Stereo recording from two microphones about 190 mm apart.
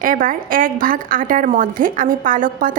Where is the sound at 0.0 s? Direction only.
45° right (ahead or behind).